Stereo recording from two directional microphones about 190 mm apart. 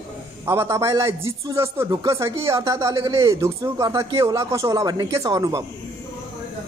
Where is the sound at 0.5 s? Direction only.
15° right (ahead or behind).